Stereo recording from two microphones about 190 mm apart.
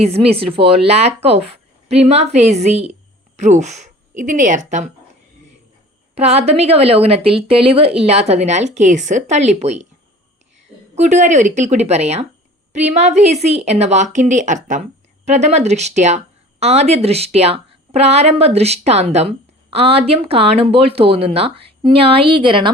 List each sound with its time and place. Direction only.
0.0 s a woman's voice: 30° right (ahead or behind)
6.1 s a woman's voice: 35° right (ahead or behind)
10.9 s a woman's voice: 40° right (ahead or behind)